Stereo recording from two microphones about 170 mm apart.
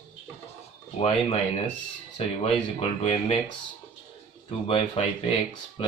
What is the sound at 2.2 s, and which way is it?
Speech, 35° left (ahead or behind).